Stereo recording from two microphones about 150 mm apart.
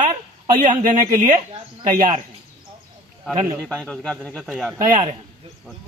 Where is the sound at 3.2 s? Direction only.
Centre (ahead or behind).